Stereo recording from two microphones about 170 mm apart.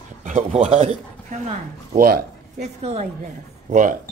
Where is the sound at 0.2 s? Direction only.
45° right (ahead or behind).